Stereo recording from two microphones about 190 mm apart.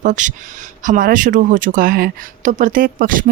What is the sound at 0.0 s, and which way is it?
Speech, 40° right (ahead or behind).